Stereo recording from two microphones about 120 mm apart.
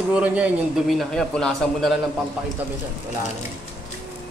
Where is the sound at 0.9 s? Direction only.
5° left (ahead or behind).